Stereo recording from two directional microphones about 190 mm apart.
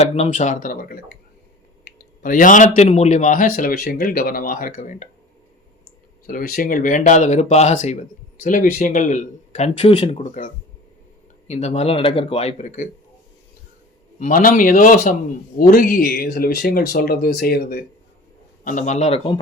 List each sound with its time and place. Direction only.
0.0 s a man's voice: 35° left (ahead or behind)
6.2 s speech: 50° left (ahead or behind)
14.2 s a man's voice: 45° left (ahead or behind)
18.6 s speech: 40° left (ahead or behind)